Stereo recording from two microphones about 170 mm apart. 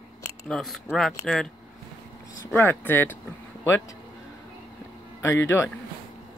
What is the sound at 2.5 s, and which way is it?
Speech, 10° left (ahead or behind).